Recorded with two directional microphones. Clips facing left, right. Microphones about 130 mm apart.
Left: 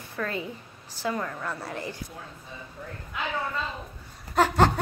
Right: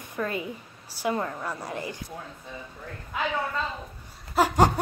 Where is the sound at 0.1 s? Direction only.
20° right (ahead or behind).